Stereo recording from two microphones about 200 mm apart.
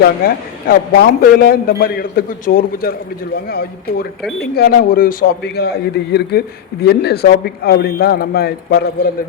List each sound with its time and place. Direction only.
0.0 s a man's voice: 50° left (ahead or behind)